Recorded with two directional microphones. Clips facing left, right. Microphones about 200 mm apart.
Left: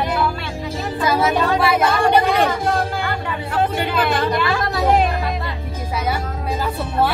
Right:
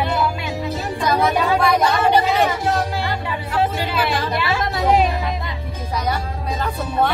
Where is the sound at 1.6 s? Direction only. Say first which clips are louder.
Even; 5° left (ahead or behind).